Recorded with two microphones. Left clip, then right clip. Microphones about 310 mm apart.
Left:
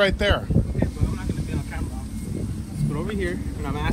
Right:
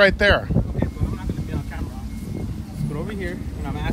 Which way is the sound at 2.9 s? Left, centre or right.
Centre.